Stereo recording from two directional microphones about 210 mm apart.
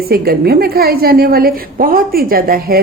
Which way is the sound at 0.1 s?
45° right (ahead or behind).